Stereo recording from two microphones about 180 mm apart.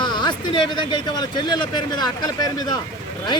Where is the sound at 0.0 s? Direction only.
25° left (ahead or behind).